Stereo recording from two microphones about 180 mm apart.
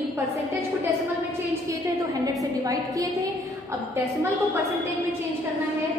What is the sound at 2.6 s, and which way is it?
Speech, 20° right (ahead or behind).